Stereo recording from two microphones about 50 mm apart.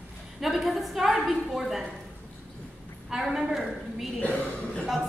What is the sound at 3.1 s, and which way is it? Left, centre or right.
A woman's voice, centre.